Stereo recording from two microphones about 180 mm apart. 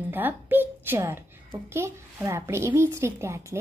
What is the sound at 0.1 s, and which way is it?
A child's voice, 10° right (ahead or behind).